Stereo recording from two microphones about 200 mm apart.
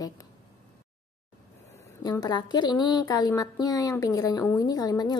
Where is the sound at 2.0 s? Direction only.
20° left (ahead or behind).